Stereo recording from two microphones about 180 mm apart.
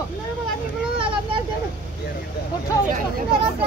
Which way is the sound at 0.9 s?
30° right (ahead or behind).